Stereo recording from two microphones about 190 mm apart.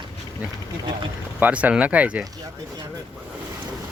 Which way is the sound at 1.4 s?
10° right (ahead or behind).